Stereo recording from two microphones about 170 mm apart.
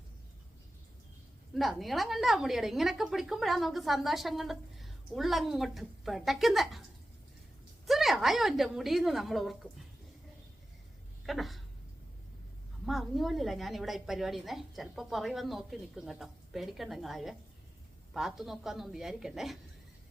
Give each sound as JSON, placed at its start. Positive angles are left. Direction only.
{"t": 1.5, "sound": "a woman's voice", "side_deg": 0}
{"t": 7.9, "sound": "a woman's voice", "side_deg": 0}
{"t": 11.3, "sound": "a woman's voice", "side_deg": 0}
{"t": 12.8, "sound": "a woman's voice", "side_deg": 0}